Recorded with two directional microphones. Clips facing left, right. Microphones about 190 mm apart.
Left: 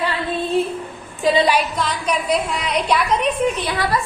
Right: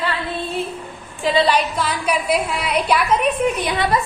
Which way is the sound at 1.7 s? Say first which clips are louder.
Right 1 dB; 5° right (ahead or behind).